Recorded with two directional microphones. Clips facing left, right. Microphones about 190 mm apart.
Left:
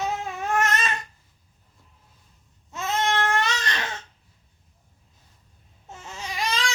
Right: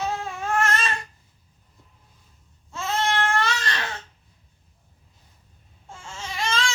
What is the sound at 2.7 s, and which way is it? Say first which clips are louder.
Babbling: even; 20° left (ahead or behind).